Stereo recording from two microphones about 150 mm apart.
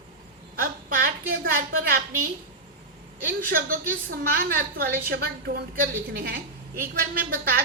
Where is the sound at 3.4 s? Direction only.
70° right (ahead or behind); by 5.9 s 90° right.